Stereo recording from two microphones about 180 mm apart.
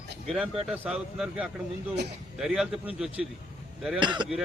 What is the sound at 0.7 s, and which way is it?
Speech, 5° right (ahead or behind).